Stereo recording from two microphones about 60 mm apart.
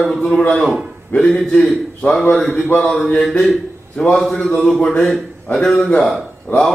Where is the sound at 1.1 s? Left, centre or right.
Centre.